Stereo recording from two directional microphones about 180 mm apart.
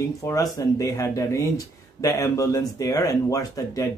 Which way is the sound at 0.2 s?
20° left (ahead or behind).